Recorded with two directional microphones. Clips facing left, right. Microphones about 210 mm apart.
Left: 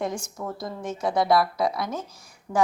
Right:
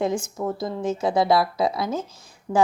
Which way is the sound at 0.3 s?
25° right (ahead or behind).